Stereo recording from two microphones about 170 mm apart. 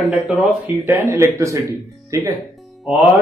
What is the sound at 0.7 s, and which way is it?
Speech, 15° right (ahead or behind).